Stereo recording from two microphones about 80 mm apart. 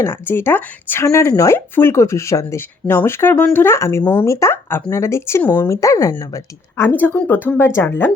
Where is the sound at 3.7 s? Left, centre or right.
Left.